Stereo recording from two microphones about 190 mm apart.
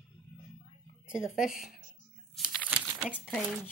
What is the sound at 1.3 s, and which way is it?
Speech, 45° left (ahead or behind).